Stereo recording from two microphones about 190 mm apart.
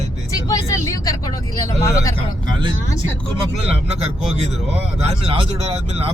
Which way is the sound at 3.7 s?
35° right (ahead or behind).